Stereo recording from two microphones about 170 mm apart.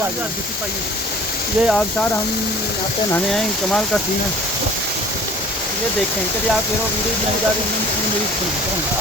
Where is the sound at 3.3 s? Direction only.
5° left (ahead or behind).